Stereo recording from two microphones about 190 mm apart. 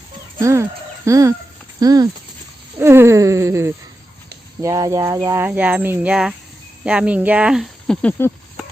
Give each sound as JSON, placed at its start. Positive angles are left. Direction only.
{"t": 0.4, "sound": "speech", "side_deg": -15}